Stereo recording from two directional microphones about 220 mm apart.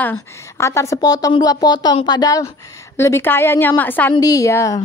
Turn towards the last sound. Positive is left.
turn(degrees=15)  # may be behind; listen again after turning